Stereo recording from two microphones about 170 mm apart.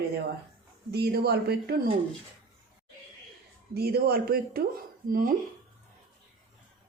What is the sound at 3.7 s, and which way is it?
Speech, 65° right (ahead or behind).